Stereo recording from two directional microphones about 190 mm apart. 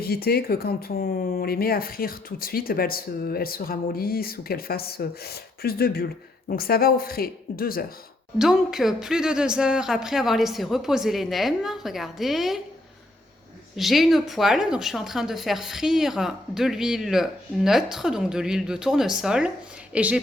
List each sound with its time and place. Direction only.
0.0 s speech: 55° left (ahead or behind)
8.4 s a woman's voice: centre (ahead or behind)
13.7 s a woman's voice: centre (ahead or behind)